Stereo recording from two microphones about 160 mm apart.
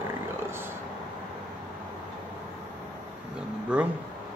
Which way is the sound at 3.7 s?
10° right (ahead or behind).